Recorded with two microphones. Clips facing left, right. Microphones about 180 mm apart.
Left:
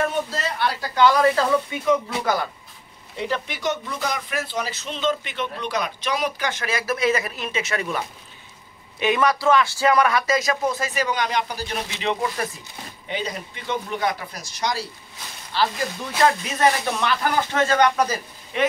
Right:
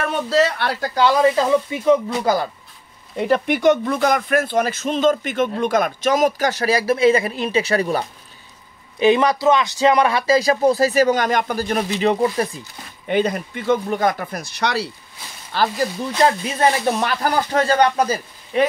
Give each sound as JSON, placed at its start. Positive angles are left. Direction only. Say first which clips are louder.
{"t": 0.0, "sound": "speech", "louder": "right 6 dB", "side_deg": -70}
{"t": 0.7, "sound": "speech", "louder": "right 1 dB", "side_deg": -30}
{"t": 1.2, "sound": "speech", "louder": "right 3 dB", "side_deg": -20}
{"t": 3.2, "sound": "speech", "louder": "right 9 dB", "side_deg": -55}
{"t": 9.0, "sound": "speech", "louder": "right 5 dB", "side_deg": -25}
{"t": 13.1, "sound": "speech", "louder": "right 10 dB", "side_deg": -55}
{"t": 15.5, "sound": "speech", "louder": "right 2 dB", "side_deg": -50}
{"t": 16.2, "sound": "speech", "louder": "right 2 dB", "side_deg": -30}